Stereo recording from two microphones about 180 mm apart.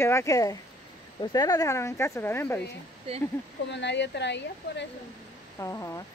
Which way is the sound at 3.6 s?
75° left (ahead or behind).